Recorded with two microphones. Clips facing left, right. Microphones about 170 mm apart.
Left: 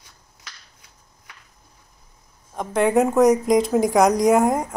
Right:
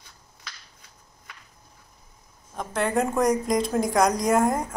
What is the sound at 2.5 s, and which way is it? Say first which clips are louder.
A woman's voice: left 6 dB; 15° left (ahead or behind).